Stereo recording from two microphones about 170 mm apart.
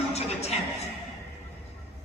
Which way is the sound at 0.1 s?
40° left (ahead or behind).